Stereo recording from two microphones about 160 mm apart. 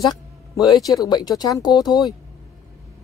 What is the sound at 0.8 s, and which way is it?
Speech, 25° left (ahead or behind).